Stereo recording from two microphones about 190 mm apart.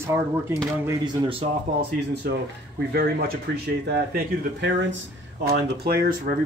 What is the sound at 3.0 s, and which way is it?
Speech, 55° right (ahead or behind).